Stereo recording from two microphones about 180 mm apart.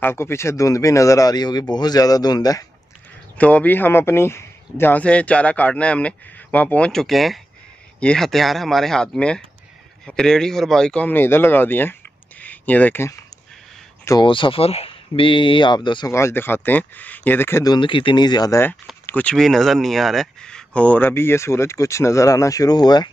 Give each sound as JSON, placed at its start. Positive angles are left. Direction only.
{"t": 0.0, "sound": "a man's voice", "side_deg": 15}
{"t": 3.3, "sound": "a man's voice", "side_deg": 10}
{"t": 14.0, "sound": "a man's voice", "side_deg": 25}
{"t": 16.1, "sound": "a man's voice", "side_deg": 15}
{"t": 17.7, "sound": "a man's voice", "side_deg": 25}